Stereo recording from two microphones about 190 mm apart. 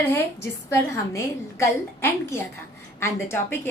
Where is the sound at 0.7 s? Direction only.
15° left (ahead or behind).